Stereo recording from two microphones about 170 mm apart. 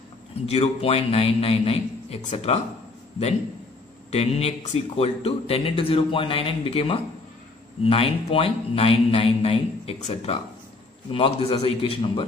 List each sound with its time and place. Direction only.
0.5 s speech: 35° left (ahead or behind)
4.1 s speech: 35° left (ahead or behind)